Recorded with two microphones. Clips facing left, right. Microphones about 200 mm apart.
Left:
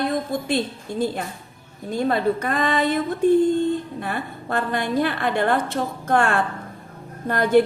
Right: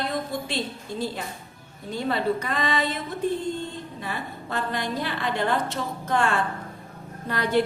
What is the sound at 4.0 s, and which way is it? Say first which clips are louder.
A woman's voice: left 5 dB; 55° left (ahead or behind).